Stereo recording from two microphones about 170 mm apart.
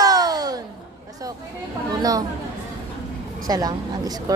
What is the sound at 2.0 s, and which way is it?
Speech, 20° right (ahead or behind).